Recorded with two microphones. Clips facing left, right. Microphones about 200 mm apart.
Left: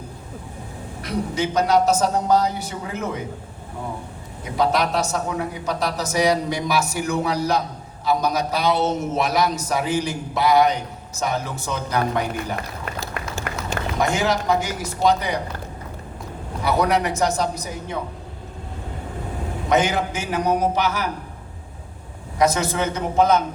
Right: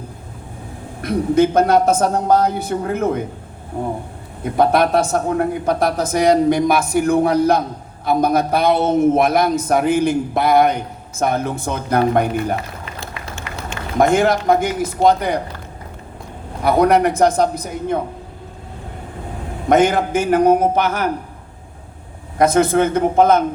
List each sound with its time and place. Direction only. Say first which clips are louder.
1.0 s a man's voice: right 9 dB; 55° right (ahead or behind)
4.4 s a man's voice: right 6 dB; 55° right (ahead or behind)
13.5 s run: left 1 dB; 55° left (ahead or behind)
14.0 s a man's voice: right 8 dB; 55° right (ahead or behind)
16.6 s a man's voice: right 6 dB; 55° right (ahead or behind)
19.6 s a man's voice: right 6 dB; 50° right (ahead or behind)
22.4 s a man's voice: right 6 dB; 55° right (ahead or behind)